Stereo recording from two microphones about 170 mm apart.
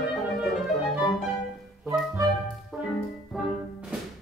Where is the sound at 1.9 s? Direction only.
20° right (ahead or behind).